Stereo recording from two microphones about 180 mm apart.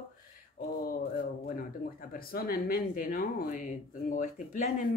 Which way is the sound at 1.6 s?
55° left (ahead or behind).